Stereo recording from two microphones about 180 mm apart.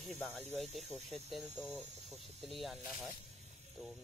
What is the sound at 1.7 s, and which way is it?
Speech, 40° right (ahead or behind).